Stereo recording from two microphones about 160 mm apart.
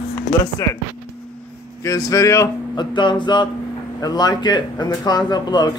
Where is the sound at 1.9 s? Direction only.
20° left (ahead or behind).